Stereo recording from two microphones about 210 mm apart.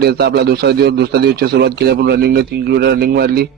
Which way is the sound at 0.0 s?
50° right (ahead or behind).